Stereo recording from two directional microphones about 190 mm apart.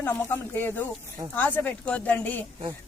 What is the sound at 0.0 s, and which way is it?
A man's voice, 15° left (ahead or behind).